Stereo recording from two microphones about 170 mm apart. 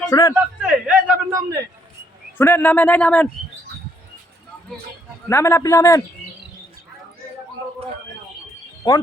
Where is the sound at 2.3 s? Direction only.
10° left (ahead or behind).